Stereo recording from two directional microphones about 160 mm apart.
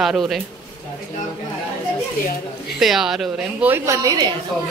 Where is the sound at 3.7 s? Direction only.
20° right (ahead or behind).